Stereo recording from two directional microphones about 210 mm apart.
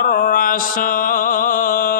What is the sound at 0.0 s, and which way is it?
Mantra, 40° left (ahead or behind).